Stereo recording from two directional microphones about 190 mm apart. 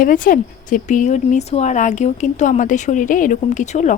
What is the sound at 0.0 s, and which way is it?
A woman's voice, 45° left (ahead or behind).